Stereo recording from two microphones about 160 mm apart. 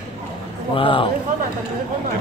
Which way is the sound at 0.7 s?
35° left (ahead or behind).